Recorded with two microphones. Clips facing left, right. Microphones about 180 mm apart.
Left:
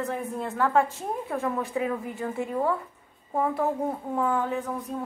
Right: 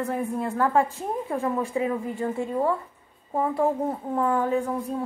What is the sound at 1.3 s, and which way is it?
Speech, 15° right (ahead or behind).